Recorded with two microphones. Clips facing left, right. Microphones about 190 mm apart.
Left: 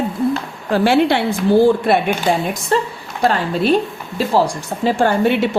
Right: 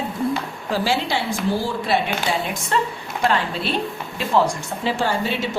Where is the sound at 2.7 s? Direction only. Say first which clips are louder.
Left 4 dB; 35° left (ahead or behind); by 5.5 s 60° left (ahead or behind).